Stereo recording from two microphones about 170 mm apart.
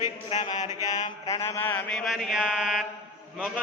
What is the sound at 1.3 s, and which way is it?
Mantra, 15° left (ahead or behind).